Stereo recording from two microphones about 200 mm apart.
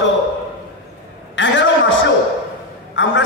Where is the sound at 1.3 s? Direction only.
65° left (ahead or behind).